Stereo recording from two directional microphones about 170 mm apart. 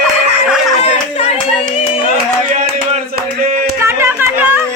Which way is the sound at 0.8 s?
35° left (ahead or behind).